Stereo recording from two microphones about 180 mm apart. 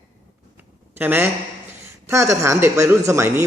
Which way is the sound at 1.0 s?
10° right (ahead or behind).